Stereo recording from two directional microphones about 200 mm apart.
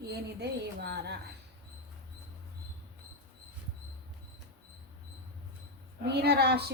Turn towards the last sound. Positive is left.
turn(degrees=-55)  # may be behind; listen again after turning